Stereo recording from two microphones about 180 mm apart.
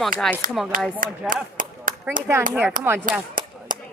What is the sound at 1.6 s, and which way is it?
Clapping, 50° right (ahead or behind).